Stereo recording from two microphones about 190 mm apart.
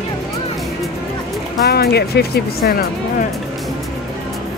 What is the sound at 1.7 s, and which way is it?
Speech, 60° left (ahead or behind).